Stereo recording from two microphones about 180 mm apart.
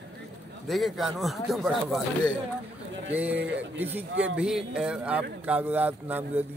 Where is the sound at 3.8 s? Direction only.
10° right (ahead or behind).